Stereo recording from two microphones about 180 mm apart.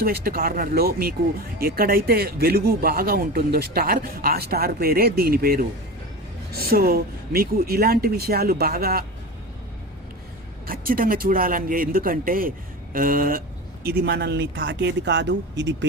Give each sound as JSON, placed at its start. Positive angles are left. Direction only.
{"t": 0.0, "sound": "speech", "side_deg": -60}
{"t": 10.7, "sound": "speech", "side_deg": -55}